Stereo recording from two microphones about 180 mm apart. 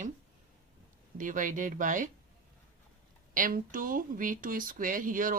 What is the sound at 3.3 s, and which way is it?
Speech, 50° right (ahead or behind).